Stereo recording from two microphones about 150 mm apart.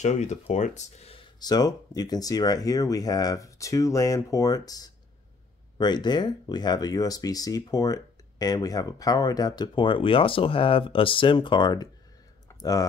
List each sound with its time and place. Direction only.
0.0 s speech: 50° left (ahead or behind)
1.4 s speech: 25° left (ahead or behind)
12.4 s a sound: 25° left (ahead or behind)